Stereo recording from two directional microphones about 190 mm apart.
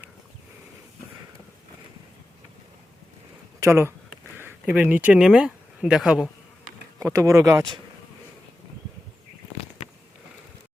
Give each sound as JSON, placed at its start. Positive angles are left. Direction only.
{"t": 3.6, "sound": "speech", "side_deg": -15}
{"t": 7.0, "sound": "speech", "side_deg": -15}